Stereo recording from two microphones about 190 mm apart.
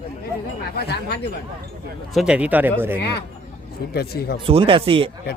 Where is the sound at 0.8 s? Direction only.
55° left (ahead or behind).